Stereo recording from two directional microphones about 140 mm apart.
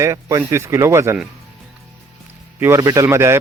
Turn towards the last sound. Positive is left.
turn(degrees=-20)  # may be behind; listen again after turning